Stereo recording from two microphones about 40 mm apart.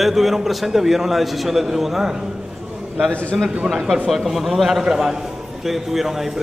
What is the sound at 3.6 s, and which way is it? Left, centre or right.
Speech, centre.